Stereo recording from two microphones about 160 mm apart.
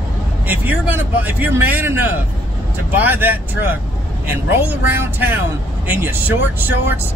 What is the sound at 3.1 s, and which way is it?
Speech, 10° right (ahead or behind).